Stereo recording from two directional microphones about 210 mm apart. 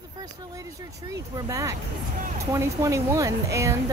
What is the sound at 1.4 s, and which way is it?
A woman's voice, 15° right (ahead or behind).